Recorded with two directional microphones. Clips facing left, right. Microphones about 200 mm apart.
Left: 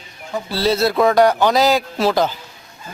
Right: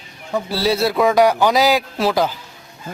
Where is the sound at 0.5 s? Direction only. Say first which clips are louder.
Left 2 dB; 10° right (ahead or behind).